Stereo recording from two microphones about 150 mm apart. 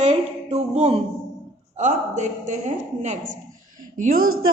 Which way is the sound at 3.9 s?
70° right (ahead or behind).